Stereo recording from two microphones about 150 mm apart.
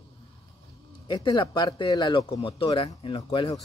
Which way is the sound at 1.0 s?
30° left (ahead or behind).